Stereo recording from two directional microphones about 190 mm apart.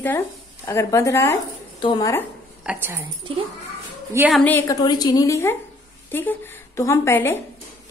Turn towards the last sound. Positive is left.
turn(degrees=10)  # may be behind; listen again after turning